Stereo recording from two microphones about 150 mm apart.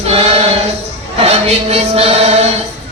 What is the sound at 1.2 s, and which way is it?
Chant, 45° right (ahead or behind).